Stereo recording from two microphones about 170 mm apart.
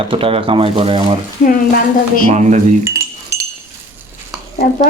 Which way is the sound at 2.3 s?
45° right (ahead or behind).